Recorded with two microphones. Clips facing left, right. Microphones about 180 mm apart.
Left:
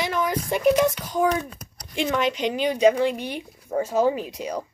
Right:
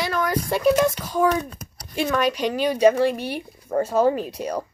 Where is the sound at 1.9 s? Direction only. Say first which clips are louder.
Right 2 dB; 20° left (ahead or behind).